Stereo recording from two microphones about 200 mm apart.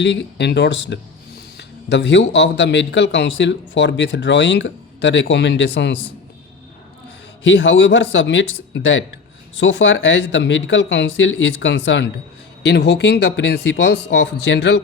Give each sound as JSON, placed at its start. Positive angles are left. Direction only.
{"t": 0.0, "sound": "speech", "side_deg": 65}
{"t": 7.4, "sound": "speech", "side_deg": 65}